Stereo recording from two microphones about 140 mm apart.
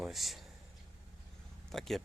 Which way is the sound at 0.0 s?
Centre (ahead or behind).